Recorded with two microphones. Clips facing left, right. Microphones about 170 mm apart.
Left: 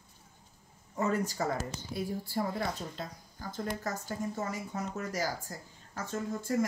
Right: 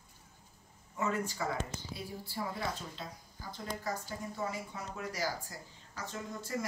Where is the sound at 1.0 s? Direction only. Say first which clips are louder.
Left 4 dB; 40° left (ahead or behind).